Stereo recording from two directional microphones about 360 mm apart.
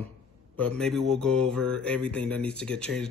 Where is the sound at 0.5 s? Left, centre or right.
Centre.